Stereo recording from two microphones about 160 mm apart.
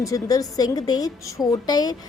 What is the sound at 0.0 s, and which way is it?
A woman's voice, 20° left (ahead or behind).